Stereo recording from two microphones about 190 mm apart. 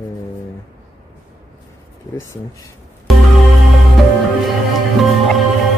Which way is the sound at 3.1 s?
Centre (ahead or behind).